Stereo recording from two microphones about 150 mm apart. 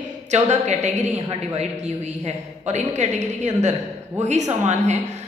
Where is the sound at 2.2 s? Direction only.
50° right (ahead or behind).